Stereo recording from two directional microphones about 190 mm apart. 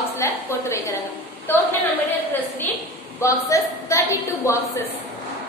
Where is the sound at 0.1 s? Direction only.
15° left (ahead or behind).